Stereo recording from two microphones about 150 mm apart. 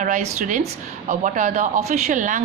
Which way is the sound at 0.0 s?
55° right (ahead or behind).